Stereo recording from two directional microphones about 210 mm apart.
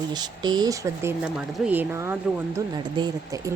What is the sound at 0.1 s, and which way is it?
Speech, 20° right (ahead or behind).